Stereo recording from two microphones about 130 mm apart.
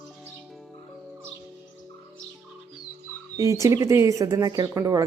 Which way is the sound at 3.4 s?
25° right (ahead or behind).